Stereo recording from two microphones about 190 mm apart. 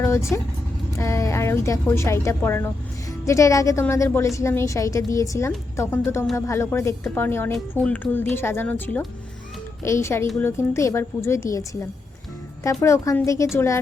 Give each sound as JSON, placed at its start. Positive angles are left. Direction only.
{"t": 0.0, "sound": "a woman's voice", "side_deg": 15}
{"t": 7.5, "sound": "a woman's voice", "side_deg": 0}